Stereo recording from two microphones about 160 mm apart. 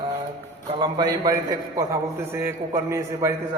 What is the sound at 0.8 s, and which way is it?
A man's voice, 25° right (ahead or behind).